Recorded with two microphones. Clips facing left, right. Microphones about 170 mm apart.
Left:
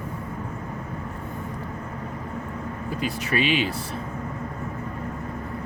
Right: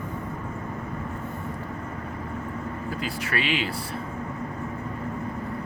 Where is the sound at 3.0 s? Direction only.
20° left (ahead or behind).